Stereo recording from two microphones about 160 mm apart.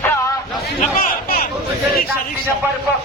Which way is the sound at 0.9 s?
60° left (ahead or behind).